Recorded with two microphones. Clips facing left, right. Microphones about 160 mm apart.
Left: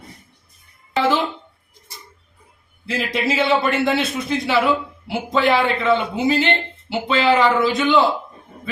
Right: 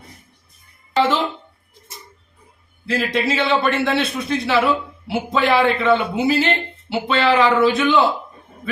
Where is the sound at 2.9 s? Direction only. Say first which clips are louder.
Right 2 dB; centre (ahead or behind).